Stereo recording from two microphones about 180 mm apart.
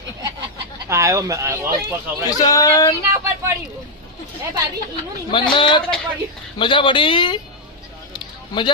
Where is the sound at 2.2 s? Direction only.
20° left (ahead or behind).